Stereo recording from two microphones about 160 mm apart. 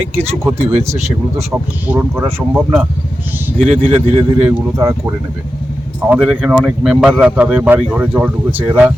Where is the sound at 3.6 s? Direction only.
Centre (ahead or behind).